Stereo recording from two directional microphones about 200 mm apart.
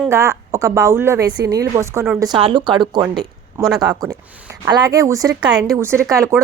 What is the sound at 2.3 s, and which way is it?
A woman's voice, 25° right (ahead or behind).